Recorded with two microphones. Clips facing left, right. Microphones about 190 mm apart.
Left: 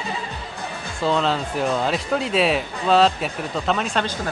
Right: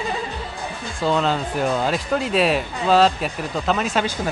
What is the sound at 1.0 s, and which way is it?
Speech, centre (ahead or behind).